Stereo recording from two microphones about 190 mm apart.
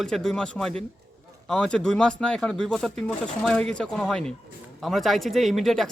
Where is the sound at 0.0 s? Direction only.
5° left (ahead or behind).